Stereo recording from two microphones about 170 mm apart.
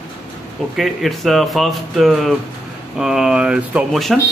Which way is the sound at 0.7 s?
Centre (ahead or behind).